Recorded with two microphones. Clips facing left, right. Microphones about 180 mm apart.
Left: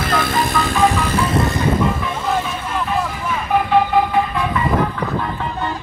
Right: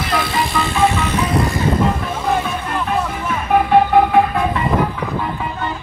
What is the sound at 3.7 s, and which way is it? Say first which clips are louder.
Music: right 4 dB; 55° right (ahead or behind).